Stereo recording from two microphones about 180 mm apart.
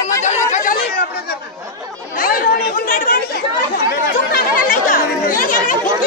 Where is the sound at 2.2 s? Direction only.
50° left (ahead or behind).